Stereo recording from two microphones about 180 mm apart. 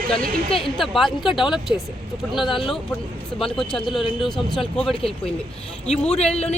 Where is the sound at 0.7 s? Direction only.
Centre (ahead or behind).